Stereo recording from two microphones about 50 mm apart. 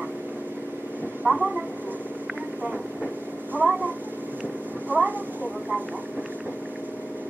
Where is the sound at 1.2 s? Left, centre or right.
Right.